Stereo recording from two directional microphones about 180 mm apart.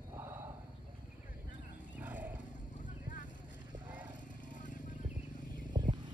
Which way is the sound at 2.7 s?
45° left (ahead or behind).